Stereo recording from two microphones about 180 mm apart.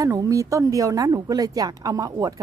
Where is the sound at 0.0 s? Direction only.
20° right (ahead or behind).